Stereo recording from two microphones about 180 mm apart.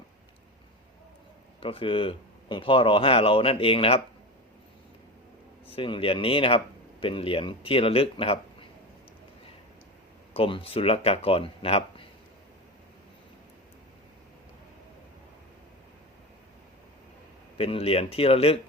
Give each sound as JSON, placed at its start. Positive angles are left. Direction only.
{"t": 1.6, "sound": "speech", "side_deg": 30}
{"t": 5.7, "sound": "speech", "side_deg": 30}
{"t": 10.3, "sound": "speech", "side_deg": 30}
{"t": 17.6, "sound": "speech", "side_deg": 35}